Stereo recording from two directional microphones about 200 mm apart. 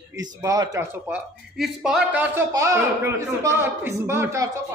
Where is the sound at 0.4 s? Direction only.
15° right (ahead or behind).